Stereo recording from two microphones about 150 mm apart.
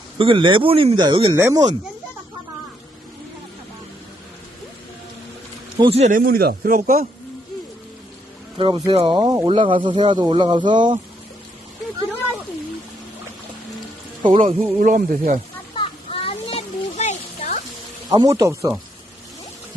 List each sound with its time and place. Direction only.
0.2 s speech: 35° right (ahead or behind)
1.4 s speech: 15° right (ahead or behind)
5.8 s speech: 40° right (ahead or behind)
6.1 s a man's voice: 75° right (ahead or behind)
8.5 s speech: 30° right (ahead or behind)
14.3 s speech: 50° right (ahead or behind); by 15.4 s 70° right (ahead or behind)
15.8 s a sound: 40° left (ahead or behind)
18.1 s speech: 25° right (ahead or behind)